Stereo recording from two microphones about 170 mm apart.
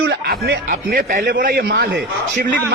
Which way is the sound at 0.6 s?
55° right (ahead or behind).